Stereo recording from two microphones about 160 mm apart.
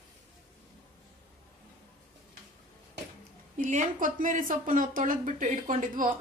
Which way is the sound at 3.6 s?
55° right (ahead or behind).